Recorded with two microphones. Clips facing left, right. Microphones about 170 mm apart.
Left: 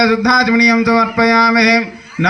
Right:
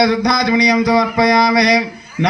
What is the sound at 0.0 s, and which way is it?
Mantra, 25° right (ahead or behind).